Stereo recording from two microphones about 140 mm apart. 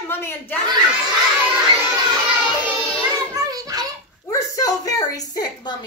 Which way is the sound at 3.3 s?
25° right (ahead or behind).